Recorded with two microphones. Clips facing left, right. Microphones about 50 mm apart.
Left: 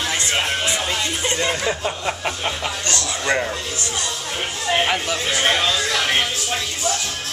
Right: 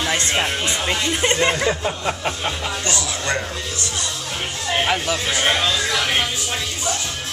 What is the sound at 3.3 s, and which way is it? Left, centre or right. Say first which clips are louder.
Speech: left 4 dB; centre.